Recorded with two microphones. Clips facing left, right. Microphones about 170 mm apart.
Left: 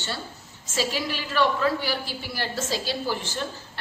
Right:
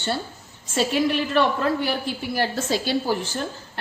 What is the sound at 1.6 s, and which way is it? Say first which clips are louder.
A woman's voice: right 2 dB; 55° right (ahead or behind).